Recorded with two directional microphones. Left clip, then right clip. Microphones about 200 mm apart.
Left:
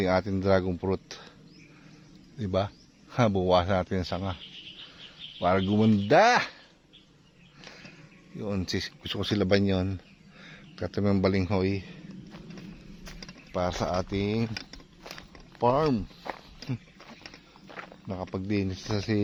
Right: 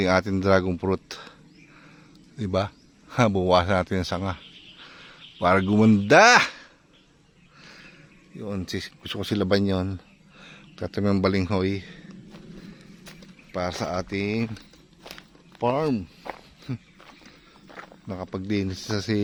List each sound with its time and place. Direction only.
0.0 s speech: 25° right (ahead or behind)
2.4 s speech: 20° right (ahead or behind)
5.4 s speech: 30° right (ahead or behind)
8.4 s speech: centre (ahead or behind)
10.4 s a sound: 15° right (ahead or behind)
13.1 s speech: 5° right (ahead or behind)
15.0 s walk: 5° right (ahead or behind)
18.1 s speech: 10° right (ahead or behind)